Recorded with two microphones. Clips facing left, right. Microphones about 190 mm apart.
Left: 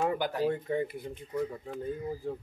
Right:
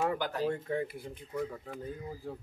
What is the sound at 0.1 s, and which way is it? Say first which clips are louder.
Speech: left 3 dB; 15° left (ahead or behind).